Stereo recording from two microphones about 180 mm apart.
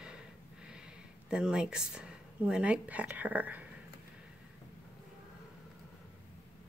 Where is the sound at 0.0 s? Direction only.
5° right (ahead or behind).